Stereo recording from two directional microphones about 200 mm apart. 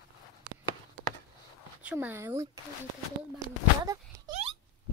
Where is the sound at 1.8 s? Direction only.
10° right (ahead or behind).